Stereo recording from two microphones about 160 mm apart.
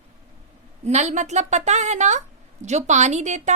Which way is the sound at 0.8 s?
45° right (ahead or behind).